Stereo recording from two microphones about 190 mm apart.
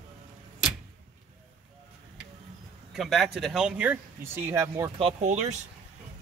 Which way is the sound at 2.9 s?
Centre (ahead or behind).